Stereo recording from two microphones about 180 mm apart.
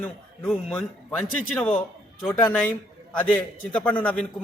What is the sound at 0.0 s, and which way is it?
A man's voice, 5° left (ahead or behind).